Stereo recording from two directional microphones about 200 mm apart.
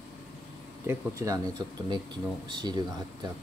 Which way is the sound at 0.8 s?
15° right (ahead or behind).